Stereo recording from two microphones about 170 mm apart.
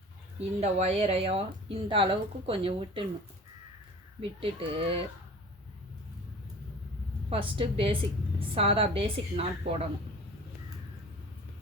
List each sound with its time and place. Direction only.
0.6 s speech: 40° right (ahead or behind)
4.2 s speech: 30° right (ahead or behind)
7.3 s speech: 30° right (ahead or behind)